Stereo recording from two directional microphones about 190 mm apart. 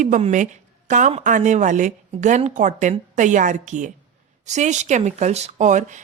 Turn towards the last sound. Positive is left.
turn(degrees=-40)  # may be behind; listen again after turning